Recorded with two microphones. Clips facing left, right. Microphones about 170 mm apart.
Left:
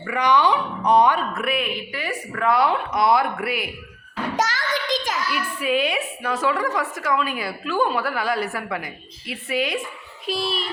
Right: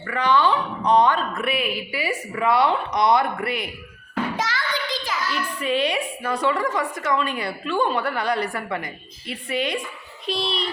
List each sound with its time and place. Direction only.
0.1 s a woman's voice: 15° left (ahead or behind)
4.4 s a sound: 45° left (ahead or behind)
5.3 s a woman's voice: 5° left (ahead or behind)